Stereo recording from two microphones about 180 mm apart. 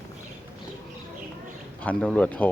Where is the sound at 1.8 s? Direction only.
5° left (ahead or behind).